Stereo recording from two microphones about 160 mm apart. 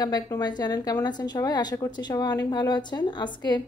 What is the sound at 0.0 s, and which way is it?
Speech, 25° left (ahead or behind).